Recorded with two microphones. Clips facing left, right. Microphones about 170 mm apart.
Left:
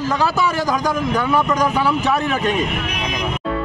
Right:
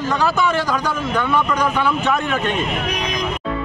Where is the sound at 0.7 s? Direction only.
15° left (ahead or behind).